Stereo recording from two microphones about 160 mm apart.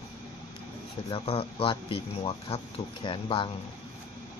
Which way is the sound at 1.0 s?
35° left (ahead or behind).